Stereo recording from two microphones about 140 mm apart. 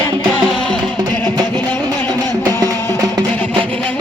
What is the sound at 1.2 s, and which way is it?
Music, 30° right (ahead or behind).